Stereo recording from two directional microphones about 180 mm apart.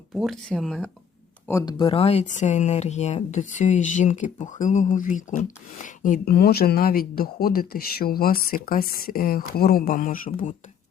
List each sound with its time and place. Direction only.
0.1 s speech: centre (ahead or behind)
1.5 s speech: 20° left (ahead or behind); by 10.5 s 50° left (ahead or behind)